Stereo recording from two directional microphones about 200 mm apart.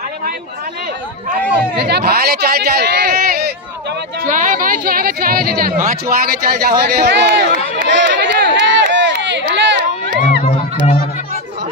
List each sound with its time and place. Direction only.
1.3 s a woman's voice: 55° right (ahead or behind)
4.2 s a woman's voice: 40° right (ahead or behind); by 7.4 s 55° right (ahead or behind)
7.5 s run: 60° right (ahead or behind)
10.4 s music: 30° left (ahead or behind)